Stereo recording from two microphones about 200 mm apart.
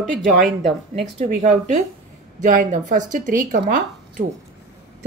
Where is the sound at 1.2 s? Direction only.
35° right (ahead or behind).